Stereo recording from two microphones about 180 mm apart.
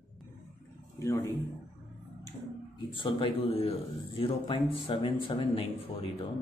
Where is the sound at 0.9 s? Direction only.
15° left (ahead or behind); by 3.7 s 35° left (ahead or behind).